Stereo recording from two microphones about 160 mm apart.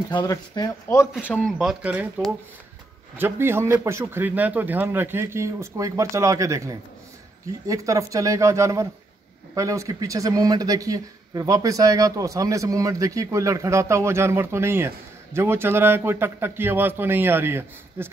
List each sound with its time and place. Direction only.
0.1 s speech: 25° left (ahead or behind)
1.2 s a man's voice: 5° left (ahead or behind); by 18.1 s 15° right (ahead or behind)